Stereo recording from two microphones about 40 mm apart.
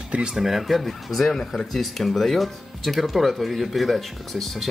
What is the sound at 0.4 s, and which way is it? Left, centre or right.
Speech, centre.